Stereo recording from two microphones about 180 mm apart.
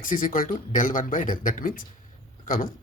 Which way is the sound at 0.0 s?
50° left (ahead or behind).